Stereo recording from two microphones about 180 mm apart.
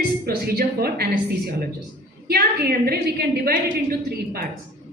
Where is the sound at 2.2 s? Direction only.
60° right (ahead or behind).